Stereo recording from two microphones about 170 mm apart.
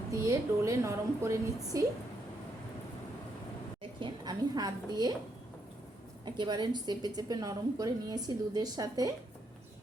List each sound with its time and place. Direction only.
0.1 s a woman's voice: 20° right (ahead or behind)
4.0 s a woman's voice: 25° right (ahead or behind)
6.2 s a woman's voice: 25° right (ahead or behind)